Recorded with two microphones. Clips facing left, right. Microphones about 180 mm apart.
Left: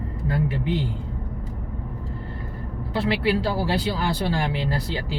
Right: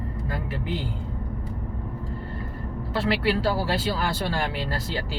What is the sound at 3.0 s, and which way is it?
Speech, 15° left (ahead or behind).